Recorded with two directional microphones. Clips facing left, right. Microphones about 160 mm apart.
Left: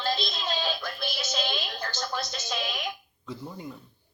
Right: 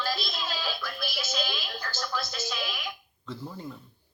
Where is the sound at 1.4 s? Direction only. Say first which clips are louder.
Left 4 dB; 30° left (ahead or behind).